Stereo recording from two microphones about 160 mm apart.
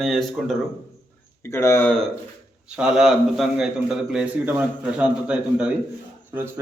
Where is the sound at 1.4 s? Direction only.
15° left (ahead or behind).